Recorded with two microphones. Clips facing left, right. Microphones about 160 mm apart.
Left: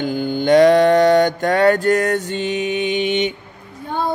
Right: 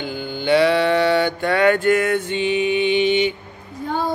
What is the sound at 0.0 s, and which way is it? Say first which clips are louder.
Mantra: left 6 dB; 45° left (ahead or behind).